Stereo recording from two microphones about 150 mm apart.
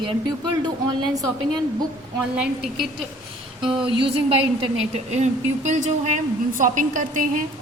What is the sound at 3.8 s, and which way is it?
Speech, 35° right (ahead or behind).